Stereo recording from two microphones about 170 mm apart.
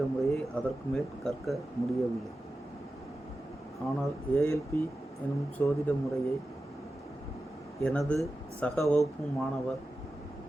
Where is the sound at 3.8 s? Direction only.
5° left (ahead or behind).